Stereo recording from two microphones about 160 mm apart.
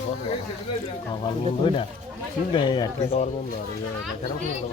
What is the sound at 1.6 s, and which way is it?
Speech, 35° left (ahead or behind).